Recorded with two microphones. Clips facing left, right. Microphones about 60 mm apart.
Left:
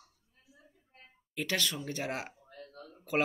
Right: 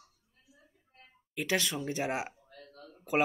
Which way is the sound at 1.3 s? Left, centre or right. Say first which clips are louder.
Right 2 dB; centre.